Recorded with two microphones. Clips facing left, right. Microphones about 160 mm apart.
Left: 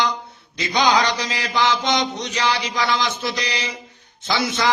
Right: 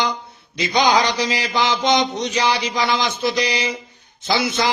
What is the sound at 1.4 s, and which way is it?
A man's voice, 15° right (ahead or behind).